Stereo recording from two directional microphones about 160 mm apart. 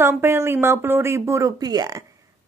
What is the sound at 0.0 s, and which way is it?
Speech, 15° right (ahead or behind).